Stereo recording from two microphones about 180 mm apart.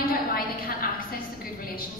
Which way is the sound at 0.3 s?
55° left (ahead or behind).